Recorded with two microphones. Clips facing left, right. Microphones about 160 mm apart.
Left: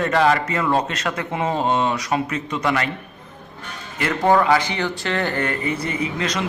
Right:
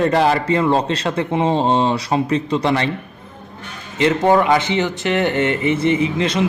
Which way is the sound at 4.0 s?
20° right (ahead or behind).